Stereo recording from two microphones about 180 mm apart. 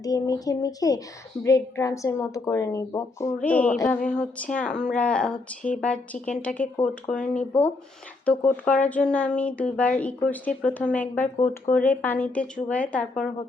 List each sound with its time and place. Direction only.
0.0 s speech: 20° left (ahead or behind)